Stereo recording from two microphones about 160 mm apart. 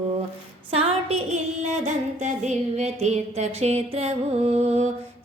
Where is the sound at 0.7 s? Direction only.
40° right (ahead or behind).